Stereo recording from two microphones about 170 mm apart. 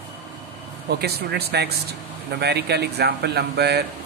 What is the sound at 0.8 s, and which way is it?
Speech, 70° right (ahead or behind).